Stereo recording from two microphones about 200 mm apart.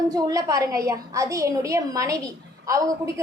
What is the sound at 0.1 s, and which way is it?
A woman's voice, 15° right (ahead or behind).